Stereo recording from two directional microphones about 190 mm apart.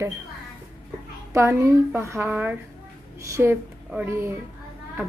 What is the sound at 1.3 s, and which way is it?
A woman's voice, 15° right (ahead or behind).